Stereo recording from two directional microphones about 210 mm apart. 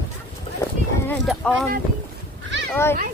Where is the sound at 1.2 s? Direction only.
Centre (ahead or behind).